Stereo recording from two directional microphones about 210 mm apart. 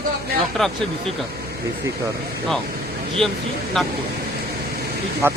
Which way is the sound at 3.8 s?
Centre (ahead or behind).